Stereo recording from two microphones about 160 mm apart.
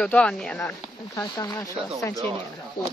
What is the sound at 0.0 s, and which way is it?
Speech, 5° left (ahead or behind).